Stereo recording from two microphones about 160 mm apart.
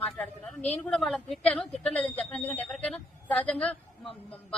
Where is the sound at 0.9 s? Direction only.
5° left (ahead or behind).